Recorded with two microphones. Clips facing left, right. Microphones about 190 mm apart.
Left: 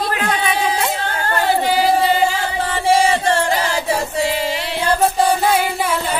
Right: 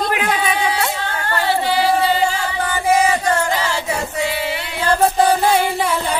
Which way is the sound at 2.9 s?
30° left (ahead or behind).